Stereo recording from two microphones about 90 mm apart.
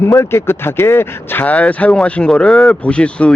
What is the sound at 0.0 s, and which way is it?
Speech, 30° left (ahead or behind).